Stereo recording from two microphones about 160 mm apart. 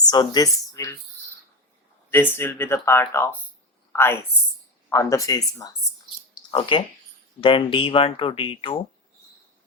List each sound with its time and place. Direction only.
0.1 s speech: 25° left (ahead or behind)
2.0 s a woman's voice: 15° left (ahead or behind)
6.5 s speech: 30° left (ahead or behind)